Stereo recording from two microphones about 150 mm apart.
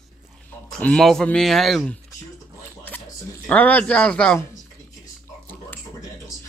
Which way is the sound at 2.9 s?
15° left (ahead or behind).